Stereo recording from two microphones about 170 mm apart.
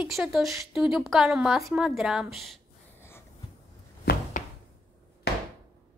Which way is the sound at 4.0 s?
55° left (ahead or behind).